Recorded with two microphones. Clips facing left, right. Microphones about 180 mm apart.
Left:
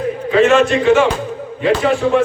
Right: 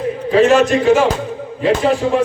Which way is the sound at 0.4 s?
40° right (ahead or behind).